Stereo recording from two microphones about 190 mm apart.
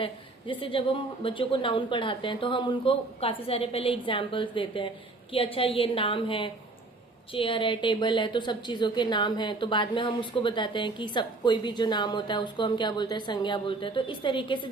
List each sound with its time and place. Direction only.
0.0 s a woman's voice: 25° left (ahead or behind)